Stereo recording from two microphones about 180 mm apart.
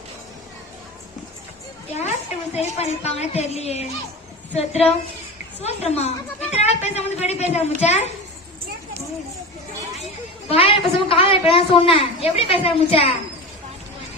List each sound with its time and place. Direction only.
2.0 s a woman's voice: 35° left (ahead or behind)
10.5 s a woman's voice: 30° left (ahead or behind)